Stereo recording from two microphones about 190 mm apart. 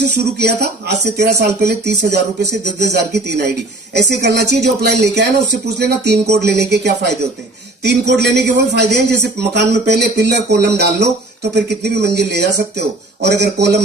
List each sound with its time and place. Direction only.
0.0 s speech: 60° right (ahead or behind)
4.5 s speech: 60° right (ahead or behind)